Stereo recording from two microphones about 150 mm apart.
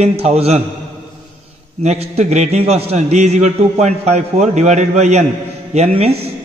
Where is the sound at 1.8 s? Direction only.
45° right (ahead or behind).